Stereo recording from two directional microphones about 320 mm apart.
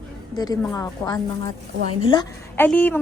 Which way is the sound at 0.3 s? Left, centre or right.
Centre.